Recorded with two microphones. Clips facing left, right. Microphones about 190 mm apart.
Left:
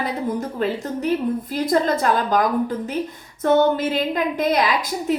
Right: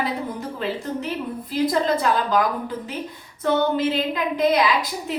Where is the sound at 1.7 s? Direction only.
45° left (ahead or behind).